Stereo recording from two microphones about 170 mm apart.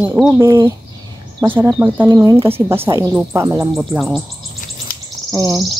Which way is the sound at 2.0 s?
20° right (ahead or behind).